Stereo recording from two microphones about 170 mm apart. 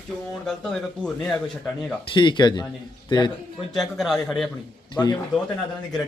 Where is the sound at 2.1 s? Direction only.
30° left (ahead or behind).